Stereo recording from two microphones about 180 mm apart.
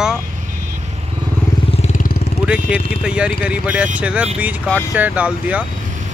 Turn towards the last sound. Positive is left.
turn(degrees=-5)  # may be behind; listen again after turning